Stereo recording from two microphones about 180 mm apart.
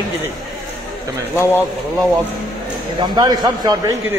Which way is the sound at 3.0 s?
20° right (ahead or behind).